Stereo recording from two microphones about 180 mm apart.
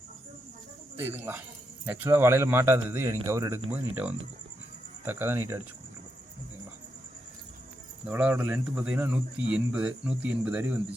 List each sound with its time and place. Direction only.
0.9 s speech: 10° right (ahead or behind)
8.0 s speech: 5° right (ahead or behind)